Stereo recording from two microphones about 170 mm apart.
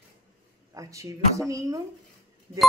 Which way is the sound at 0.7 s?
20° right (ahead or behind).